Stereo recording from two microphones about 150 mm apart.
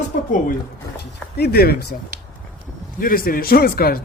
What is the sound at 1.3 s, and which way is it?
Speech, 90° left.